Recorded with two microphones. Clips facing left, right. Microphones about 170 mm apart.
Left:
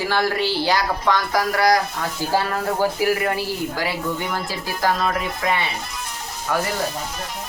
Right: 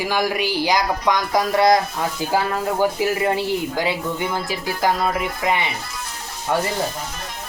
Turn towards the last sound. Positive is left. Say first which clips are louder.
# right 1 dB
turn(degrees=-25)  # may be behind; listen again after turning